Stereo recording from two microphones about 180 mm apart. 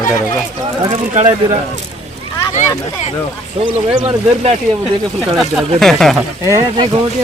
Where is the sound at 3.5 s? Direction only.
30° right (ahead or behind).